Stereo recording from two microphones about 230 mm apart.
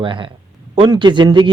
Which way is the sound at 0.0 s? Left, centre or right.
Right.